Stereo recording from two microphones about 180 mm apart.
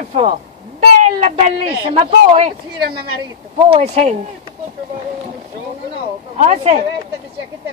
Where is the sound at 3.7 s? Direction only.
35° right (ahead or behind).